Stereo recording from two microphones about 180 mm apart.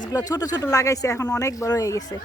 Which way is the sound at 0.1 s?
20° left (ahead or behind).